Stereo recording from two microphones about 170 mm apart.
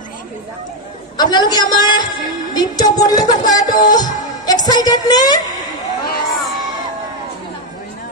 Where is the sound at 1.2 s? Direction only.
25° left (ahead or behind).